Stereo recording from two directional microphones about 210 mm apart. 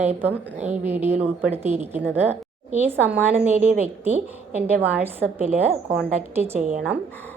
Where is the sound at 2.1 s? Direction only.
30° right (ahead or behind).